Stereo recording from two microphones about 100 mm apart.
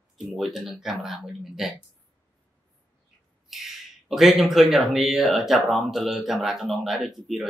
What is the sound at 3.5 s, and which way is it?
Speech, centre (ahead or behind).